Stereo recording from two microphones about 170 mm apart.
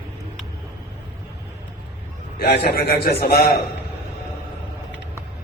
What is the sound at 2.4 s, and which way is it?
A man's voice, 70° left (ahead or behind).